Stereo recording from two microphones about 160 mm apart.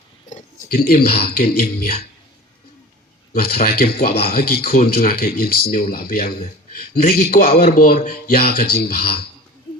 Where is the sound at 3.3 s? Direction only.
70° left (ahead or behind).